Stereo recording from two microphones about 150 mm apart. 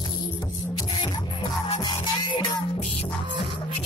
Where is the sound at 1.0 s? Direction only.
30° left (ahead or behind).